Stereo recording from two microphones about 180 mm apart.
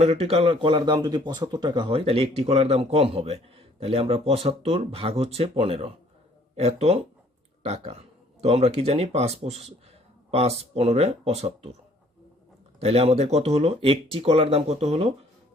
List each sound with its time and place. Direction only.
0.0 s speech: 35° right (ahead or behind)
12.8 s speech: 35° right (ahead or behind)